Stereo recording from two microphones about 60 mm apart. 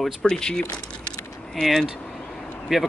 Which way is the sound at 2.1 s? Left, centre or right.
Centre.